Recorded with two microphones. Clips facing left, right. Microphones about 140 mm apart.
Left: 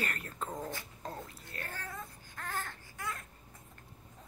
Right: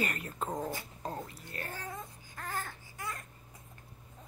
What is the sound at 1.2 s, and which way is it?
Cat, 5° right (ahead or behind).